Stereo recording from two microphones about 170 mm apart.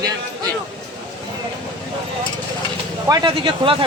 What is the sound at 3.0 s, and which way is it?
Speech, 25° right (ahead or behind).